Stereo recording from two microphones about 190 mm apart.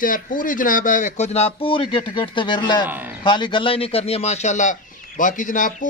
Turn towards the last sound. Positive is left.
turn(degrees=45)  # may be behind; listen again after turning